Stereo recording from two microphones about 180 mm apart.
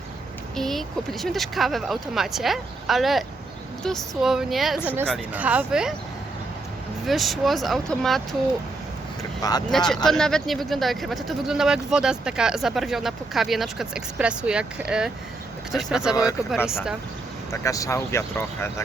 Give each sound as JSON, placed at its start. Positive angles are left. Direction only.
{"t": 0.5, "sound": "speech", "side_deg": 0}
{"t": 7.0, "sound": "speech", "side_deg": 0}
{"t": 9.4, "sound": "speech", "side_deg": 20}
{"t": 9.7, "sound": "speech", "side_deg": 5}
{"t": 17.5, "sound": "speech", "side_deg": 15}